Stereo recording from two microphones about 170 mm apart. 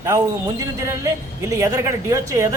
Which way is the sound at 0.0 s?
20° right (ahead or behind).